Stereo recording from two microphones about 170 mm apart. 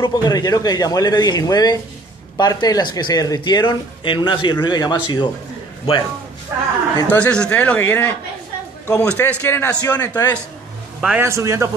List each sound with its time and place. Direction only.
0.0 s speech: 25° left (ahead or behind)
7.1 s a man's voice: 5° left (ahead or behind)
11.0 s a man's voice: 5° right (ahead or behind)
11.2 s speech: 15° right (ahead or behind)